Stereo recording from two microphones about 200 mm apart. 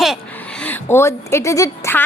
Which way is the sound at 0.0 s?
Centre (ahead or behind).